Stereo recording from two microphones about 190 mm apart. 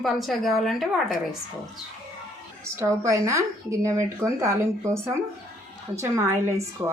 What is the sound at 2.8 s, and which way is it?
Speech, 15° right (ahead or behind).